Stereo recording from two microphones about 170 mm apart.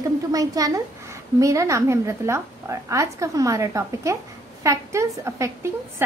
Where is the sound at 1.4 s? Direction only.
20° right (ahead or behind).